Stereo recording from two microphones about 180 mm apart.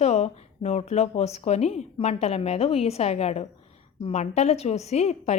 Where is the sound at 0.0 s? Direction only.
35° left (ahead or behind).